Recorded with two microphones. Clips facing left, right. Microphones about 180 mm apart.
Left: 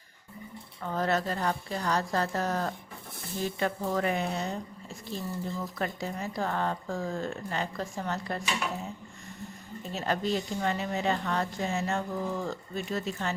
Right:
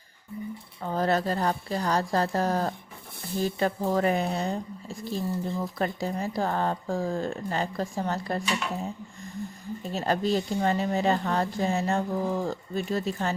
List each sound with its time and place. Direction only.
0.8 s speech: 35° right (ahead or behind)
9.9 s speech: 35° right (ahead or behind)